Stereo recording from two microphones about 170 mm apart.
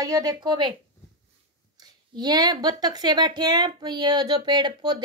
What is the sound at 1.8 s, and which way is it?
A woman's voice, 25° right (ahead or behind).